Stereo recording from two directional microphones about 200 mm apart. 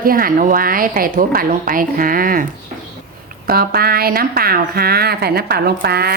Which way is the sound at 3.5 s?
50° right (ahead or behind).